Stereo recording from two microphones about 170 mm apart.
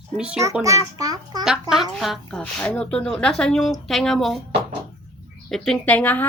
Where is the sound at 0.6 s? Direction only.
20° right (ahead or behind).